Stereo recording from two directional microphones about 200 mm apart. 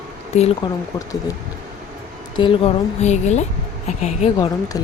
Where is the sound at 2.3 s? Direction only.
25° left (ahead or behind).